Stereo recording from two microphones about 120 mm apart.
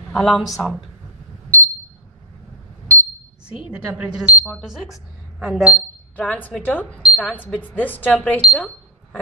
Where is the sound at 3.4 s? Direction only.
10° right (ahead or behind).